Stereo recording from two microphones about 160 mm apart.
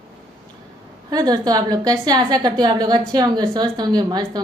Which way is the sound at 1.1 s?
25° right (ahead or behind).